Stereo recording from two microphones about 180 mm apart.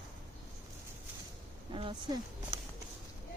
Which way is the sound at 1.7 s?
25° right (ahead or behind).